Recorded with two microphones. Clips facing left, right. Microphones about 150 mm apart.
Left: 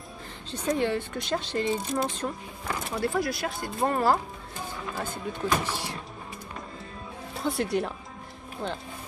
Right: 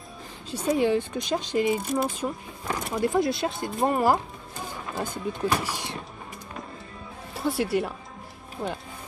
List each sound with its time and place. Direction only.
0.5 s speech: 10° right (ahead or behind)
7.3 s speech: centre (ahead or behind)